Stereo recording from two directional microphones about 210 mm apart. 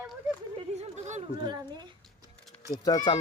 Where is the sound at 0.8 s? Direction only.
35° right (ahead or behind).